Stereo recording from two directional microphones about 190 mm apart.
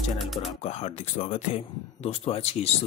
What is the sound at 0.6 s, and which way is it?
Speech, 35° left (ahead or behind).